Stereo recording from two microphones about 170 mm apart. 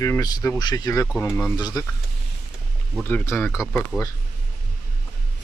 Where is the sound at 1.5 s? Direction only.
20° left (ahead or behind).